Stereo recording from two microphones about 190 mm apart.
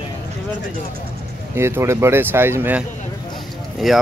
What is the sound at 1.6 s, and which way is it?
Speech, 15° right (ahead or behind).